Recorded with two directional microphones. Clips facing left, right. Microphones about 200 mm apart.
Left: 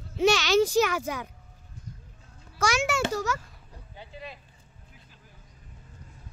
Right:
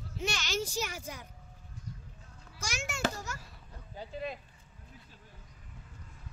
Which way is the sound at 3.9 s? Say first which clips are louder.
Right 4 dB; 45° right (ahead or behind).